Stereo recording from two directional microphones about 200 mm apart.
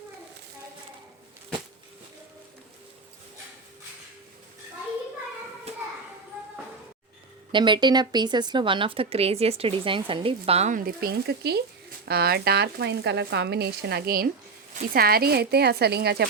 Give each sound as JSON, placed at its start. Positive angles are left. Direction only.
{"t": 7.5, "sound": "speech", "side_deg": -25}